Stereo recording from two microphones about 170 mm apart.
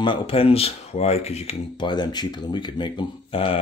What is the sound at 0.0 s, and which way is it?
Speech, 30° left (ahead or behind).